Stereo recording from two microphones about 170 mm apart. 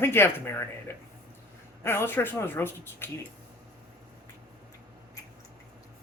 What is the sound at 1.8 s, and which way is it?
Speech, 15° left (ahead or behind).